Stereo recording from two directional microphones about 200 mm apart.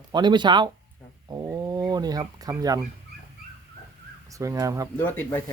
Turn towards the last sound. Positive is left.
turn(degrees=10)  # may be behind; listen again after turning